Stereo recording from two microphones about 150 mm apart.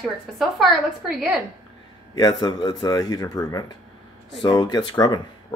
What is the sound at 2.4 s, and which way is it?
Speech, 25° left (ahead or behind).